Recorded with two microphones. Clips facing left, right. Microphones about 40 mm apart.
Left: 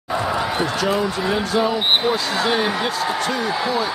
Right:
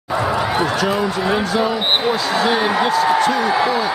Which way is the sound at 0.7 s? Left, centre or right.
Centre.